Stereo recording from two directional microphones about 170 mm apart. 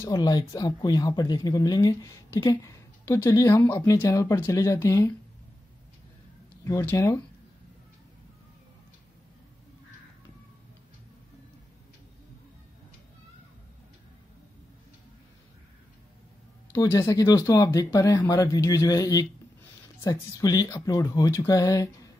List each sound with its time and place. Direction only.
0.0 s speech: 20° left (ahead or behind)
6.6 s speech: 15° left (ahead or behind)
16.8 s speech: 15° left (ahead or behind)